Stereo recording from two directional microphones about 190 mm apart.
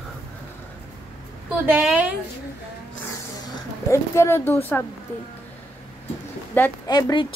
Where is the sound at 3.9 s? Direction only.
15° left (ahead or behind).